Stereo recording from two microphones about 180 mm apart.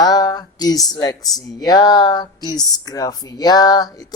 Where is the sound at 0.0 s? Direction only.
20° left (ahead or behind).